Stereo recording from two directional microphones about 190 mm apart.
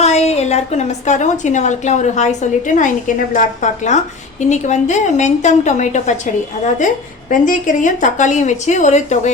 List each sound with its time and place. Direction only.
0.0 s a woman's voice: 35° left (ahead or behind)